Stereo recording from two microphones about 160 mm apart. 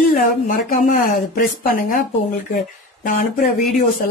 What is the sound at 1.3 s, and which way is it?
Speech, 60° left (ahead or behind).